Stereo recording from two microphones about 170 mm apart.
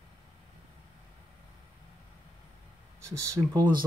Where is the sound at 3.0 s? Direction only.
20° right (ahead or behind).